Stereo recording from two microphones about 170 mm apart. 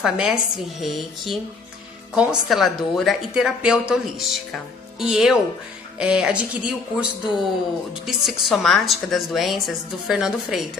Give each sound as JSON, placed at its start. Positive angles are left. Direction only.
{"t": 0.0, "sound": "a woman's voice", "side_deg": -5}